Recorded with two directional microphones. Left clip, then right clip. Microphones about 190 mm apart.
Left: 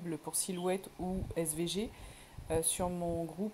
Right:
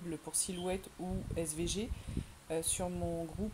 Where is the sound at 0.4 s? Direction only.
10° left (ahead or behind).